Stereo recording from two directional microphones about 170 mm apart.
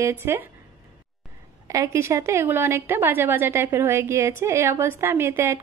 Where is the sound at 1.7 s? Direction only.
15° right (ahead or behind).